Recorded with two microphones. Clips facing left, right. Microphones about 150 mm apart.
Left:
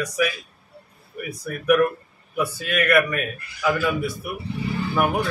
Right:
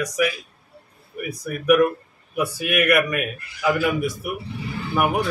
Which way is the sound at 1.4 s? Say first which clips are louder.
Right 2 dB; 15° right (ahead or behind).